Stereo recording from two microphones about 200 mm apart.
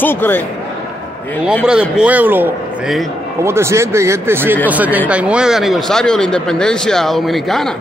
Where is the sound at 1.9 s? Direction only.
5° right (ahead or behind).